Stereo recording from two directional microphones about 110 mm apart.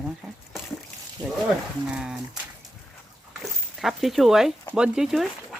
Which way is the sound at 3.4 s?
Centre (ahead or behind).